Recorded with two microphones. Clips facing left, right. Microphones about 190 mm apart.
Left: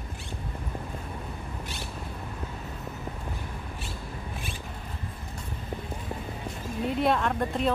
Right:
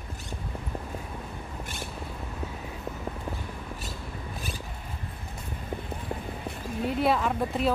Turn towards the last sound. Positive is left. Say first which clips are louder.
# even
turn(degrees=-5)  # may be behind; listen again after turning